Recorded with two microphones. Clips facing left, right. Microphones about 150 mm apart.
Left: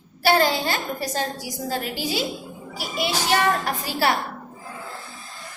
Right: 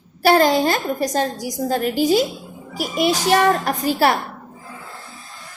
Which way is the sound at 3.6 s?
50° right (ahead or behind).